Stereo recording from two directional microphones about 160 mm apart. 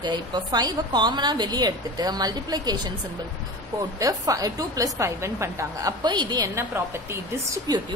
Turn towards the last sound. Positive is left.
turn(degrees=-25)  # may be behind; listen again after turning